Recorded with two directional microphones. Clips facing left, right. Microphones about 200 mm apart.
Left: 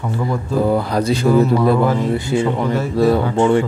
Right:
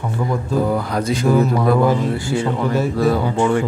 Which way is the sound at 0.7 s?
35° left (ahead or behind).